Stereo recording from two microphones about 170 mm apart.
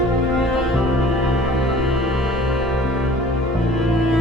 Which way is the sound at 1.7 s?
Centre (ahead or behind).